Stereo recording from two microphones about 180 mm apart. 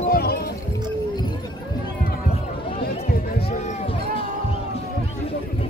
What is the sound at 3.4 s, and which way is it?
Run, 40° left (ahead or behind).